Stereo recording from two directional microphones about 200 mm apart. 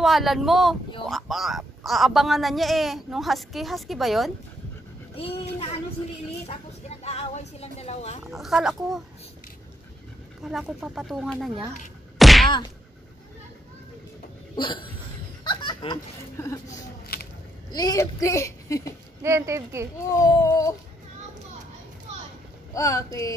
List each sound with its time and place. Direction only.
0.0 s a woman's voice: centre (ahead or behind)
5.1 s speech: 30° left (ahead or behind)
8.3 s a woman's voice: centre (ahead or behind)
10.4 s a woman's voice: centre (ahead or behind)
12.2 s whack: centre (ahead or behind)
12.4 s speech: 25° left (ahead or behind)
14.5 s cough: 25° left (ahead or behind)
15.4 s a sound: 20° left (ahead or behind)
17.6 s a woman's voice: 20° left (ahead or behind)
19.2 s speech: 15° right (ahead or behind)
20.2 s a woman's voice: 15° left (ahead or behind)
22.8 s a woman's voice: 15° left (ahead or behind)